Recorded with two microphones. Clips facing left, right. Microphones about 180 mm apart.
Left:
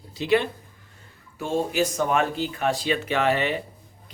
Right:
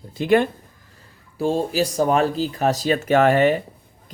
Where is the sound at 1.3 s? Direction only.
35° right (ahead or behind).